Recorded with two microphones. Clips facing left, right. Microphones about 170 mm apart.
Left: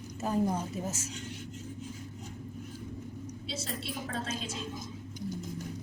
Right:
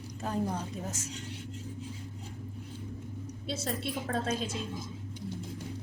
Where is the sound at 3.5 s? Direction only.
50° right (ahead or behind).